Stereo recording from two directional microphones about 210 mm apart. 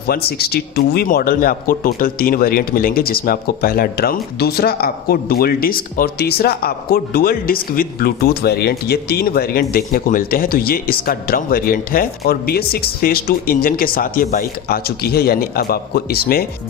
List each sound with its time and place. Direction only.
0.0 s a man's voice: 50° left (ahead or behind)